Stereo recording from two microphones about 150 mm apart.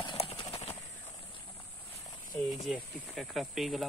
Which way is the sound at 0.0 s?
40° left (ahead or behind).